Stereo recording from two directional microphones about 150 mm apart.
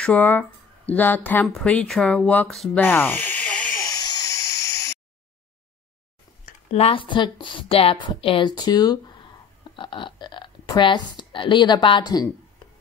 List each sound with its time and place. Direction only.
0.0 s speech: 10° left (ahead or behind)
2.8 s snake: 10° left (ahead or behind)
3.8 s a sound: 25° left (ahead or behind)
6.7 s a woman's voice: 40° left (ahead or behind)